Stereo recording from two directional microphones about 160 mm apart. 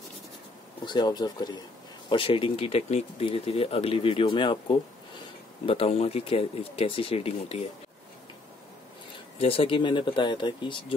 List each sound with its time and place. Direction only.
0.8 s speech: 25° left (ahead or behind)
9.4 s speech: 35° left (ahead or behind)